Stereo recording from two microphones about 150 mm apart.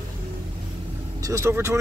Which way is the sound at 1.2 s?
20° right (ahead or behind).